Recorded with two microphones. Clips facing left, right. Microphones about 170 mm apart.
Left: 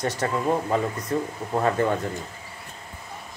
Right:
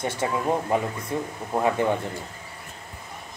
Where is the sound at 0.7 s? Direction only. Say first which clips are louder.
Left 1 dB; 15° right (ahead or behind).